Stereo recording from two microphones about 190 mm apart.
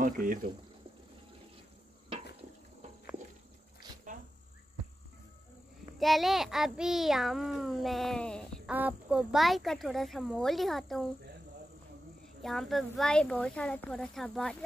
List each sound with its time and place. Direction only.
0.0 s speech: 45° right (ahead or behind)
5.9 s a child's voice: centre (ahead or behind)
12.4 s a child's voice: centre (ahead or behind)